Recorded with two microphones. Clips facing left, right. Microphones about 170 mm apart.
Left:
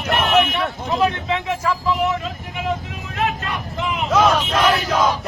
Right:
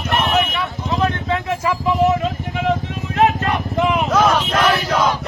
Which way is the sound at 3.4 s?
50° right (ahead or behind).